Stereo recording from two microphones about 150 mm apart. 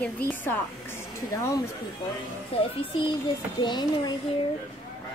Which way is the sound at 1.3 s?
20° left (ahead or behind).